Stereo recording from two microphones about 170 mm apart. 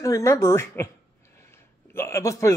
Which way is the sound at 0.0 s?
20° left (ahead or behind).